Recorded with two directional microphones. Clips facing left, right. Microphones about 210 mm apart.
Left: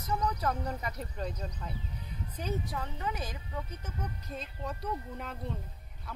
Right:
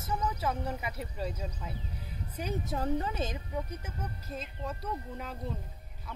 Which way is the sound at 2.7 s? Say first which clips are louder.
Right 5 dB; 35° right (ahead or behind).